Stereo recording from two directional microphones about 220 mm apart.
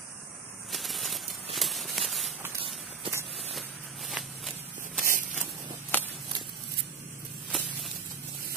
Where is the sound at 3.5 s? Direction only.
Centre (ahead or behind).